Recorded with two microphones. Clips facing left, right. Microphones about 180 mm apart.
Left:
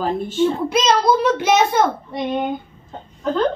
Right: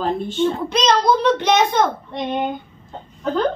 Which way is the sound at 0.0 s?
5° left (ahead or behind).